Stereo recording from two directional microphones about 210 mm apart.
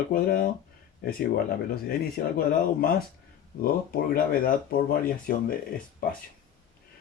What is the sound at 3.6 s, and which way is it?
Speech, 45° left (ahead or behind).